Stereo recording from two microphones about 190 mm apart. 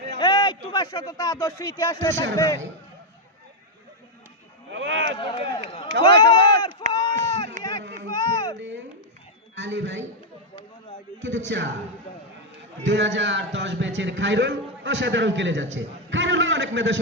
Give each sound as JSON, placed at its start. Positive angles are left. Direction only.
{"t": 0.2, "sound": "a man's voice", "side_deg": 25}
{"t": 4.7, "sound": "speech", "side_deg": -80}
{"t": 5.1, "sound": "speech", "side_deg": 30}
{"t": 6.1, "sound": "speech", "side_deg": -60}
{"t": 6.8, "sound": "run", "side_deg": -40}
{"t": 7.6, "sound": "a sound", "side_deg": -45}
{"t": 8.1, "sound": "a sound", "side_deg": 20}
{"t": 9.6, "sound": "a man's voice", "side_deg": -70}
{"t": 11.2, "sound": "a man's voice", "side_deg": -70}
{"t": 12.8, "sound": "a man's voice", "side_deg": -70}